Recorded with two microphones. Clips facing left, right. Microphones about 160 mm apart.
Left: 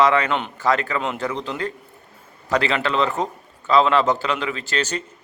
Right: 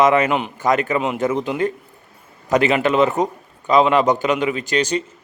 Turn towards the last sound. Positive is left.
turn(degrees=-15)  # may be behind; listen again after turning